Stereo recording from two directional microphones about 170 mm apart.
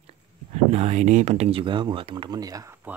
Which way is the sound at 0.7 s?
40° right (ahead or behind).